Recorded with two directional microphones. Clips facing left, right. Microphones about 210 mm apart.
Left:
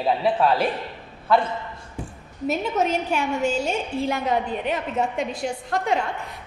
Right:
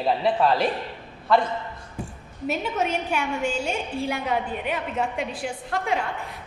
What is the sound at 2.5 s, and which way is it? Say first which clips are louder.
A woman's voice: left 3 dB; 40° left (ahead or behind).